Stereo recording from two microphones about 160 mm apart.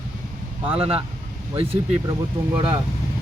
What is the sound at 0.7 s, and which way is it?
Speech, 35° right (ahead or behind).